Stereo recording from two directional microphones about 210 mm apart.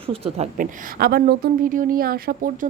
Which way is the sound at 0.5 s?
45° right (ahead or behind).